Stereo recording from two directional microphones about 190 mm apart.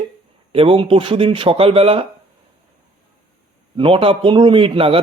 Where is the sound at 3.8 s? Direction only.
30° right (ahead or behind).